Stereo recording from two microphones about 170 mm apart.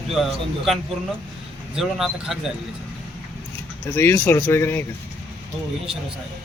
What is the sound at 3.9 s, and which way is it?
Speech, 15° left (ahead or behind).